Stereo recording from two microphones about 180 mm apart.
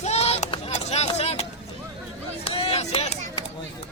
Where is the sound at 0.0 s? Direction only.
35° left (ahead or behind).